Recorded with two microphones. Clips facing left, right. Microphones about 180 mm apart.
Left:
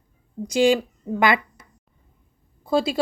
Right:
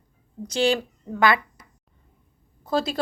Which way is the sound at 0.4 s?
10° left (ahead or behind).